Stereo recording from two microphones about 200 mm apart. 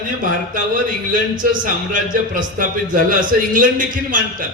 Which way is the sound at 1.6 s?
40° right (ahead or behind).